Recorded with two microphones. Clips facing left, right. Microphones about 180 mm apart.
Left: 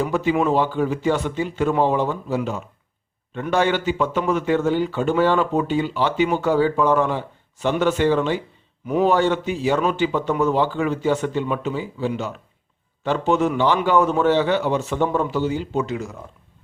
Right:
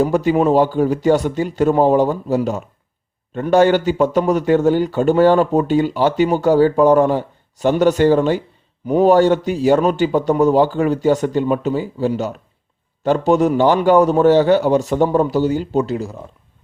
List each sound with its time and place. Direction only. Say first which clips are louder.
0.0 s speech: right 5 dB; 40° right (ahead or behind)